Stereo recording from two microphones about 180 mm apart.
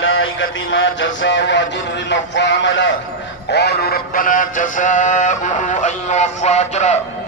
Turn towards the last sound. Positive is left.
turn(degrees=40)  # may be behind; listen again after turning